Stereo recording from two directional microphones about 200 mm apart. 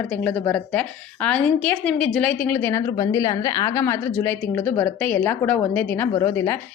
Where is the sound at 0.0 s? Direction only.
5° left (ahead or behind).